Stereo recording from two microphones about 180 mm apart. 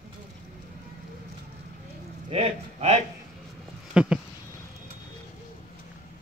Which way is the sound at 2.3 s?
35° right (ahead or behind).